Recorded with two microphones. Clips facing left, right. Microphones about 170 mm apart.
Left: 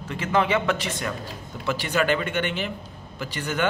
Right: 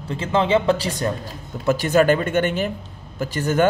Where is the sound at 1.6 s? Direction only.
45° right (ahead or behind).